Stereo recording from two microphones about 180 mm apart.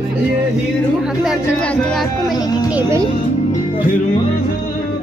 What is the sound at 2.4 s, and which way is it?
Speech, 20° left (ahead or behind).